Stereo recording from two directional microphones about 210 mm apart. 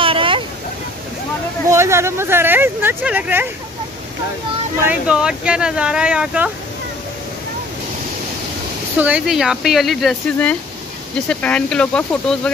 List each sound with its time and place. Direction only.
0.0 s vehicle: 25° right (ahead or behind)
1.7 s speech: 15° right (ahead or behind)
4.8 s speech: 5° right (ahead or behind)
8.9 s speech: 5° right (ahead or behind)